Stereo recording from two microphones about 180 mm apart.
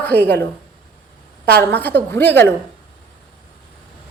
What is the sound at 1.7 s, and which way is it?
Speech, 10° left (ahead or behind).